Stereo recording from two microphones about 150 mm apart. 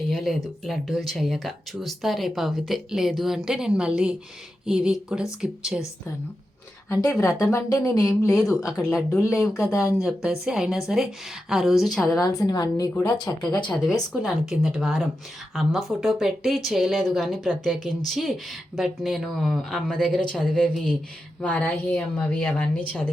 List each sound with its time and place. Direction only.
0.1 s speech: centre (ahead or behind)
7.0 s speech: 20° left (ahead or behind)
8.3 s speech: centre (ahead or behind)
12.2 s speech: 25° left (ahead or behind)
14.1 s a woman's voice: centre (ahead or behind)